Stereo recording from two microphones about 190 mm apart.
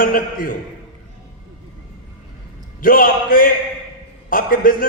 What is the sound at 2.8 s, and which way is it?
A man's voice, 50° left (ahead or behind).